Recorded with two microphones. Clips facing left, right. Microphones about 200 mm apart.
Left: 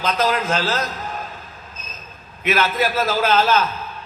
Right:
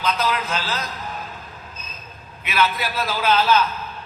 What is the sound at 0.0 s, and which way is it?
Speech, 45° left (ahead or behind).